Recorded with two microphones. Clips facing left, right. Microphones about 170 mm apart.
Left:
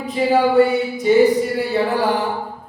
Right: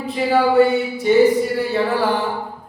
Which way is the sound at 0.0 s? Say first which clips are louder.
Left 1 dB; 15° left (ahead or behind).